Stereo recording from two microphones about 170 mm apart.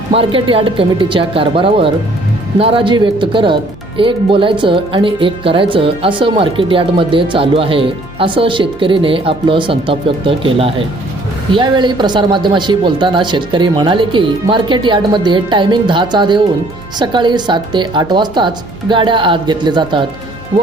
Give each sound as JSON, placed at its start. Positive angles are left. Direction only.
{"t": 0.1, "sound": "speech", "side_deg": -35}